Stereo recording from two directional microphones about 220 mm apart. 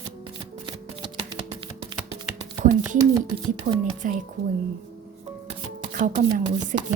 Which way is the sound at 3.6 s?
30° right (ahead or behind).